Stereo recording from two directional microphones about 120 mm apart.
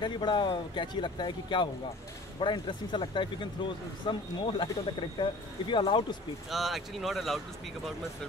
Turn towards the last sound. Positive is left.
turn(degrees=0)  # may be behind; listen again after turning